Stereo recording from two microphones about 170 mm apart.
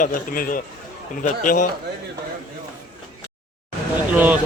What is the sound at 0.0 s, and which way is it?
A man's voice, 55° left (ahead or behind).